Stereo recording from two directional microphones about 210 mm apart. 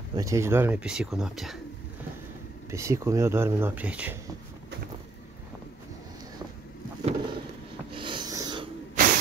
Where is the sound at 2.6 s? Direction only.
15° right (ahead or behind).